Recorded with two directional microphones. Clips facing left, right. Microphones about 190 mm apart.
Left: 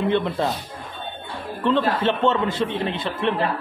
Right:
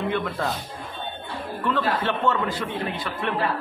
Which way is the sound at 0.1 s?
25° left (ahead or behind).